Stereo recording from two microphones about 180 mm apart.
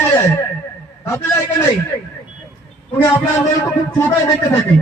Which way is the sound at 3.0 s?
15° left (ahead or behind).